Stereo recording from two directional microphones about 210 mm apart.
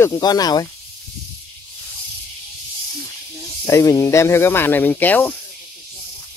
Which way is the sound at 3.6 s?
15° left (ahead or behind).